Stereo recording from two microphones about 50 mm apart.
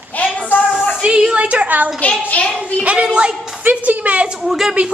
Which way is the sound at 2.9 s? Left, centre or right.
Centre.